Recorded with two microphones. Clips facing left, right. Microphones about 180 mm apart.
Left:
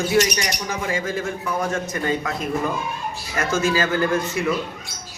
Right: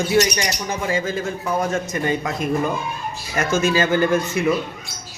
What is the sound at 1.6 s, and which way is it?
Speech, 20° right (ahead or behind).